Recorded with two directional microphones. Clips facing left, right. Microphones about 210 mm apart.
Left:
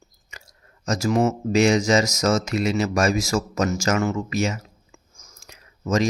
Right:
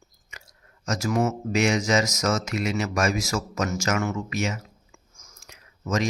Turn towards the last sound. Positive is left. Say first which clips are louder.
# left 4 dB
turn(degrees=30)  # may be behind; listen again after turning